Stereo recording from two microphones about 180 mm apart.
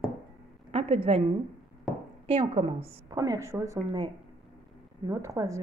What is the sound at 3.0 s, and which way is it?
A woman's voice, 20° right (ahead or behind).